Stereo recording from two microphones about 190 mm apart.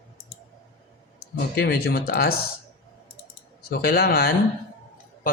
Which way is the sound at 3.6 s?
55° left (ahead or behind).